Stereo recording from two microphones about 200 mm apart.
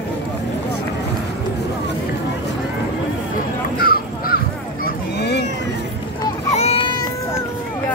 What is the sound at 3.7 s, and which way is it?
Crow, 50° left (ahead or behind).